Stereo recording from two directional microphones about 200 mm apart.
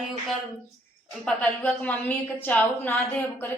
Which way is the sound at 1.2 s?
5° left (ahead or behind).